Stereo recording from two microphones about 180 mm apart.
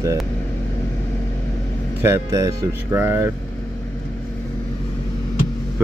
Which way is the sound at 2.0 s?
15° right (ahead or behind).